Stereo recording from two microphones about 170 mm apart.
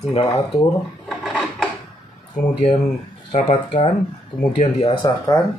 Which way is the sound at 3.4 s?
35° left (ahead or behind).